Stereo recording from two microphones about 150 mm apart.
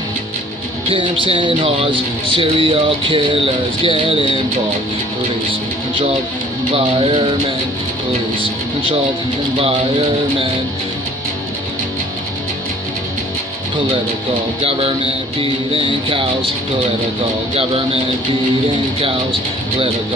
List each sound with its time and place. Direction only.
0.8 s speech: 35° right (ahead or behind)
6.7 s speech: 35° right (ahead or behind)
14.6 s speech: 40° right (ahead or behind)
17.6 s speech: 40° right (ahead or behind)